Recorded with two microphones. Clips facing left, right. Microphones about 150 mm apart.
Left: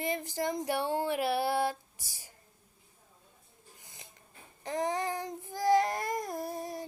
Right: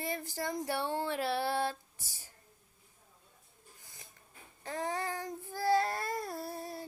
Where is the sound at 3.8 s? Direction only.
20° left (ahead or behind).